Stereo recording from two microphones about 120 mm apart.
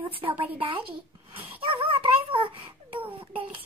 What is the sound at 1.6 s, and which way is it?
Dog, 45° right (ahead or behind).